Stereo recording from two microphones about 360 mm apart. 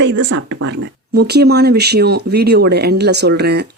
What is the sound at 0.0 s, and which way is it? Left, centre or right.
Speech, right.